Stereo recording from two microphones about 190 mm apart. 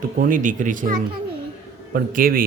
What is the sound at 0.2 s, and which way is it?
A man's voice, 45° right (ahead or behind).